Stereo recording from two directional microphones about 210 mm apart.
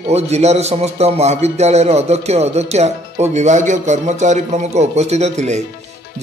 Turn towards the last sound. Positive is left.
turn(degrees=-35)  # may be behind; listen again after turning